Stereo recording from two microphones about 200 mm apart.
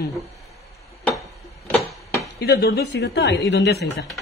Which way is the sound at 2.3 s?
55° left (ahead or behind).